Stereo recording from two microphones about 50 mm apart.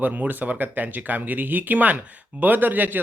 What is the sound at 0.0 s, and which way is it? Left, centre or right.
Speech, right.